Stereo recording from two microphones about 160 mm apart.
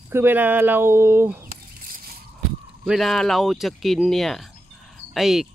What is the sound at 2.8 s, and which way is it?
Speech, centre (ahead or behind).